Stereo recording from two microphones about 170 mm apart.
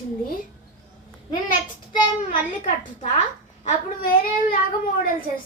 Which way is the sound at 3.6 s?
55° left (ahead or behind).